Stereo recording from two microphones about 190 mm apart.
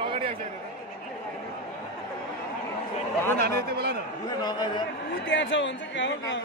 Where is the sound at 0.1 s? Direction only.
30° right (ahead or behind).